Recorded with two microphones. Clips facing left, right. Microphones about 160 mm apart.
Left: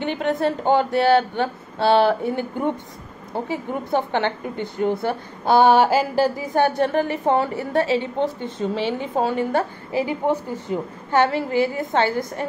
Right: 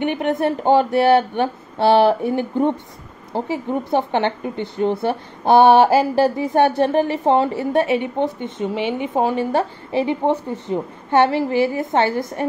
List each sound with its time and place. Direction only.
0.0 s a woman's voice: 20° right (ahead or behind)